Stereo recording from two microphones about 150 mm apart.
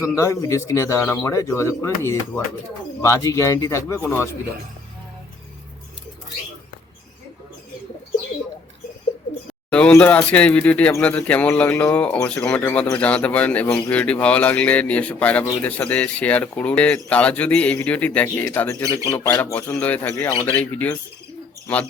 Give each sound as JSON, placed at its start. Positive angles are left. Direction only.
{"t": 0.2, "sound": "speech", "side_deg": 20}
{"t": 9.6, "sound": "speech", "side_deg": 10}
{"t": 18.5, "sound": "speech", "side_deg": 20}